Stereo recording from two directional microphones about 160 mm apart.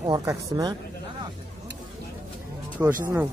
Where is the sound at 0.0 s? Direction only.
20° right (ahead or behind).